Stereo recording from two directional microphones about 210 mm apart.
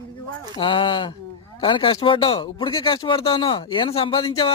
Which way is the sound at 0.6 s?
25° left (ahead or behind).